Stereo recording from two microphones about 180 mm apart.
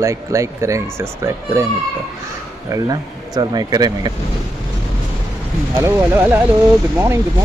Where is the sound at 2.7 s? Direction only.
20° right (ahead or behind).